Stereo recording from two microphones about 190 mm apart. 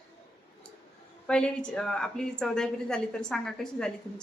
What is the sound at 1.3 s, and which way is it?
A woman's voice, 5° left (ahead or behind).